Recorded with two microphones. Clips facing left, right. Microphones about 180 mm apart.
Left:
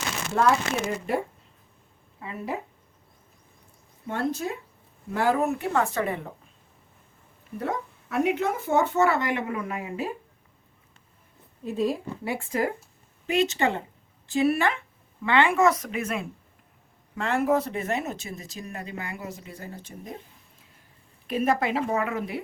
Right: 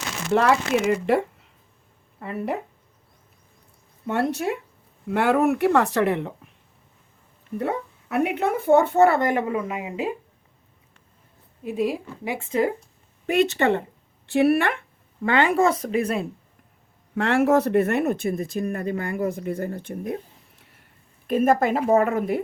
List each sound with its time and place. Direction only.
0.3 s speech: 80° right
2.2 s speech: 65° right (ahead or behind)
4.0 s speech: 75° right (ahead or behind)
7.6 s speech: 65° right (ahead or behind); by 9.4 s 50° right (ahead or behind)
9.5 s speech: 20° right (ahead or behind)
11.6 s speech: 10° right (ahead or behind)
12.4 s speech: 25° right (ahead or behind)
13.2 s speech: 55° right (ahead or behind); by 16.2 s 35° right (ahead or behind)
17.2 s speech: 80° right; by 20.1 s 60° right (ahead or behind)
21.2 s a woman's voice: 50° right (ahead or behind)